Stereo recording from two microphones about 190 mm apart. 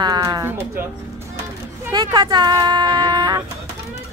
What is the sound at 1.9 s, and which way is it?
Speech, 20° right (ahead or behind).